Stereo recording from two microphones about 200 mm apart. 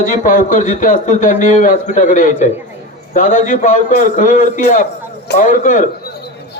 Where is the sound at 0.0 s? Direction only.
40° left (ahead or behind).